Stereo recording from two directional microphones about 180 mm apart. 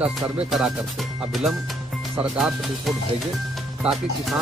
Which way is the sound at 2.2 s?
5° right (ahead or behind).